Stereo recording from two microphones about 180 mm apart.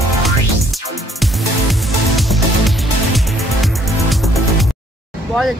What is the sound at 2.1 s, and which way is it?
Music, centre (ahead or behind).